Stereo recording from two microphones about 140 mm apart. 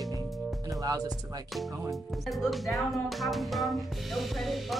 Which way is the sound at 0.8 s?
25° right (ahead or behind).